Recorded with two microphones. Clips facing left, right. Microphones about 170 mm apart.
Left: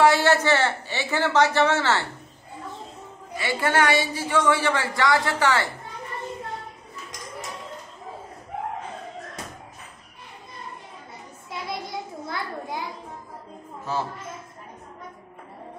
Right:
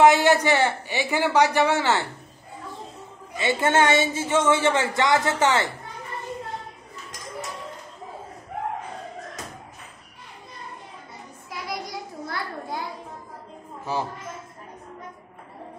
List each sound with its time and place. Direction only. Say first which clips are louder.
0.0 s a man's voice: right 2 dB; 20° right (ahead or behind)
3.3 s a man's voice: right 2 dB; 20° right (ahead or behind)
11.5 s a sound: left 1 dB; 25° left (ahead or behind)
13.9 s a man's voice: right 1 dB; 15° right (ahead or behind)